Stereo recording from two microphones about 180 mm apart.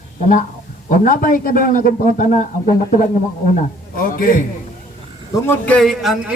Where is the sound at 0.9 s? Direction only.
45° left (ahead or behind).